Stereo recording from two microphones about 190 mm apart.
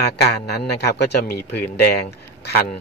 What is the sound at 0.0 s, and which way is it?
A man's voice, 60° left (ahead or behind).